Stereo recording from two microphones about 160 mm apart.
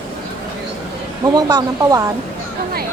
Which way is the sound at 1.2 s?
25° right (ahead or behind).